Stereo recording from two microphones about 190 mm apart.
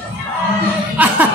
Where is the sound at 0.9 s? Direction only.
10° right (ahead or behind).